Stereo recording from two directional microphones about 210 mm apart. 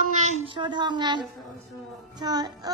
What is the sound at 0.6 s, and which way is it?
A child's voice, 20° right (ahead or behind).